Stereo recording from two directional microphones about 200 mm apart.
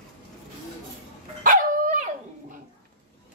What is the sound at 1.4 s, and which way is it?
Dog, 40° right (ahead or behind).